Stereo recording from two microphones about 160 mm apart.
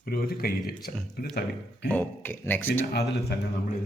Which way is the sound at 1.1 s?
85° left.